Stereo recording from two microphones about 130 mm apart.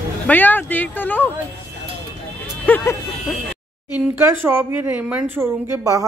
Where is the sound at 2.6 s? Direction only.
15° left (ahead or behind).